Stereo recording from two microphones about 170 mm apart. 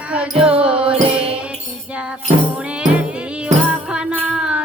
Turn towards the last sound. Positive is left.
turn(degrees=-5)  # may be behind; listen again after turning